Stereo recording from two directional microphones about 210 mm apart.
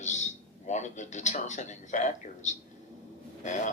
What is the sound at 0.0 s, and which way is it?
A man's voice, 35° left (ahead or behind).